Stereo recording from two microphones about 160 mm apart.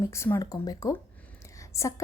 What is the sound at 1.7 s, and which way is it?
Whispering, 20° left (ahead or behind).